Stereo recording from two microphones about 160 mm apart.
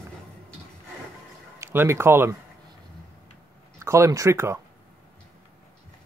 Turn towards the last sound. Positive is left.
turn(degrees=-15)  # may be behind; listen again after turning